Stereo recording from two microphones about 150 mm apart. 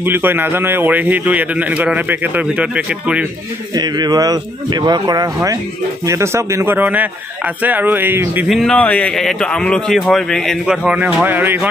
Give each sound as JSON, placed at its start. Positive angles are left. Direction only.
{"t": 0.0, "sound": "a man's voice", "side_deg": -15}
{"t": 3.7, "sound": "a man's voice", "side_deg": -25}
{"t": 8.5, "sound": "speech", "side_deg": 0}
{"t": 10.9, "sound": "a man's voice", "side_deg": -5}